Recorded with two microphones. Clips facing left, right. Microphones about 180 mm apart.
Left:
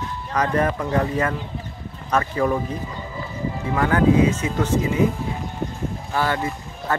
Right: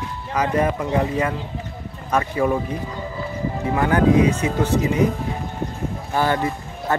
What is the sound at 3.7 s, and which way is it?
Speech, 20° right (ahead or behind).